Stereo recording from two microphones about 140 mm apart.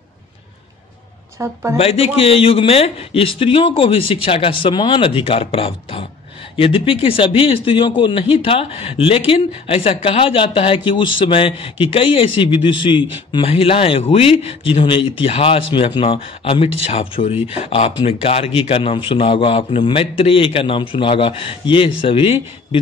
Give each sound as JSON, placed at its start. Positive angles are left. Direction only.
{"t": 1.4, "sound": "speech", "side_deg": -20}
{"t": 1.8, "sound": "a man's voice", "side_deg": 45}